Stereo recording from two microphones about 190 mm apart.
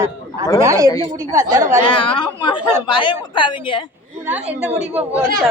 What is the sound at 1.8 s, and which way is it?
Speech, 25° left (ahead or behind).